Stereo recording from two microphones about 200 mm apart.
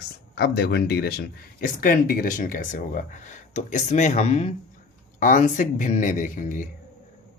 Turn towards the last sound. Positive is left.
turn(degrees=40)  # may be behind; listen again after turning